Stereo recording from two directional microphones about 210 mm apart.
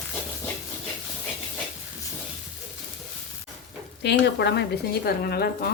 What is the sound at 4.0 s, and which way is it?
Speech, 55° left (ahead or behind).